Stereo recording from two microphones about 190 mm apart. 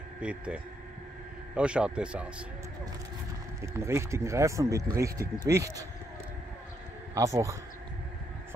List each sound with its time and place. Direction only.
0.2 s a man's voice: 5° right (ahead or behind)
3.6 s speech: 15° right (ahead or behind)
7.2 s speech: 15° right (ahead or behind)